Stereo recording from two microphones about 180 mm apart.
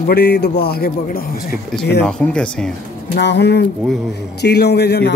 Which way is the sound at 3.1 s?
70° left (ahead or behind).